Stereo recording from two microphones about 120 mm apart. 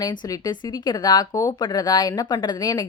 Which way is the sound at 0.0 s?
35° left (ahead or behind).